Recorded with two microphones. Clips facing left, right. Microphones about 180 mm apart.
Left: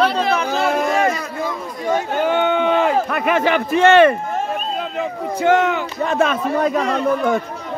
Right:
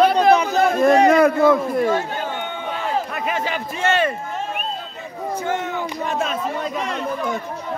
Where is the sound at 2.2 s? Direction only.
85° left.